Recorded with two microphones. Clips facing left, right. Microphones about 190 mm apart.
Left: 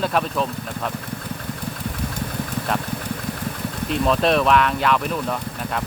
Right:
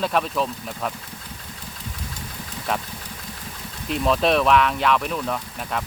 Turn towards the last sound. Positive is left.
turn(degrees=0)  # may be behind; listen again after turning